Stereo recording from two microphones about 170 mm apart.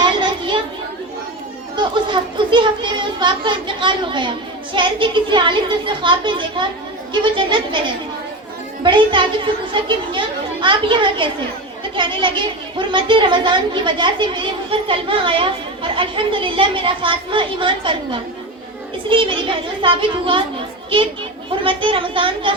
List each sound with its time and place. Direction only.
0.0 s children playing: 30° right (ahead or behind)
1.7 s speech: 30° right (ahead or behind)
8.8 s speech: 30° right (ahead or behind)
21.5 s speech: 30° right (ahead or behind)